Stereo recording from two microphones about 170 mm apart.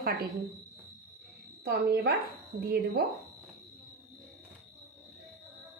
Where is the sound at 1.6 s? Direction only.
70° right (ahead or behind).